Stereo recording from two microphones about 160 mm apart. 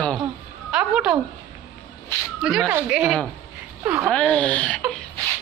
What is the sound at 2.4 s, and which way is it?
Speech, 5° right (ahead or behind).